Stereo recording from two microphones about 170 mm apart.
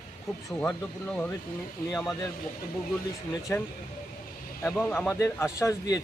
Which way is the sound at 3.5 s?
10° left (ahead or behind).